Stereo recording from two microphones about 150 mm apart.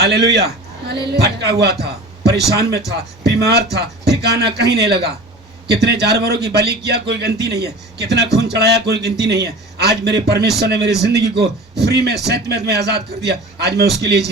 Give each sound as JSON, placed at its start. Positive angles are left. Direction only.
{"t": 0.0, "sound": "a man's voice", "side_deg": -90}